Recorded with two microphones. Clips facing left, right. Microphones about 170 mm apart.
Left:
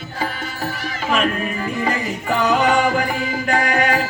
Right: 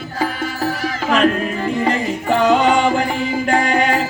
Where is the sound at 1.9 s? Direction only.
25° right (ahead or behind).